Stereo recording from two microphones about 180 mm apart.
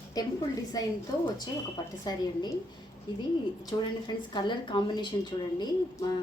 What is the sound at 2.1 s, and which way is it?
Speech, 25° left (ahead or behind).